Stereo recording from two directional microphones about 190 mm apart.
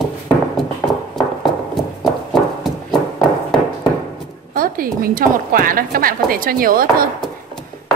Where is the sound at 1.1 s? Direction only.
Centre (ahead or behind).